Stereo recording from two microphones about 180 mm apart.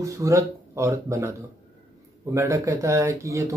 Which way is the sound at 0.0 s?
15° right (ahead or behind).